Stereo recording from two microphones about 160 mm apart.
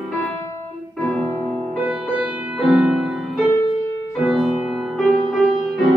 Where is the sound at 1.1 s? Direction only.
5° left (ahead or behind).